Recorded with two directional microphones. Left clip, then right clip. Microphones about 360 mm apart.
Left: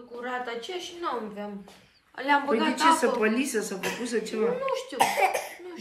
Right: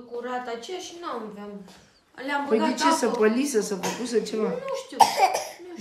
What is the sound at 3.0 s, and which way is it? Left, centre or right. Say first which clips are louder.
A woman's voice: right 2 dB; right.